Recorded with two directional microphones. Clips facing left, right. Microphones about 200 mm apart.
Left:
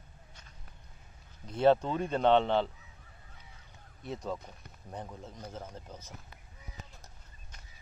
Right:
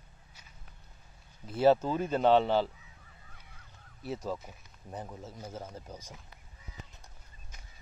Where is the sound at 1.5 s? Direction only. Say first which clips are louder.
Right 1 dB; 5° right (ahead or behind).